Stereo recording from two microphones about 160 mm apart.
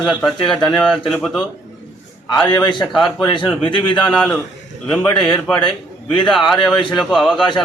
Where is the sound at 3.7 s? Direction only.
30° left (ahead or behind).